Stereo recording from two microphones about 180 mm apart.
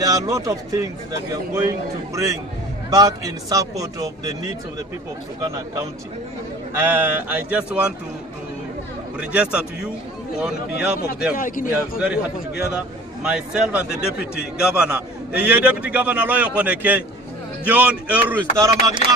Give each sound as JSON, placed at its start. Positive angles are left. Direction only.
{"t": 0.0, "sound": "a man's voice", "side_deg": -20}
{"t": 6.7, "sound": "a man's voice", "side_deg": -10}
{"t": 9.2, "sound": "a man's voice", "side_deg": -5}
{"t": 11.3, "sound": "speech", "side_deg": 50}
{"t": 12.0, "sound": "a man's voice", "side_deg": -5}